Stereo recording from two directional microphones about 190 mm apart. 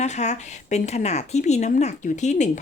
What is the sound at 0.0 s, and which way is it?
Speech, 35° left (ahead or behind).